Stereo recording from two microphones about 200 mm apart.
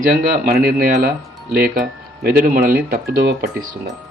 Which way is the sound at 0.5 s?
50° right (ahead or behind).